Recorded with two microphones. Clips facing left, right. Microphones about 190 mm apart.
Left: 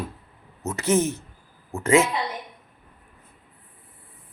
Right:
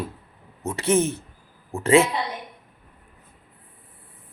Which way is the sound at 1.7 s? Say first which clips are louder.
Right 1 dB; 15° right (ahead or behind).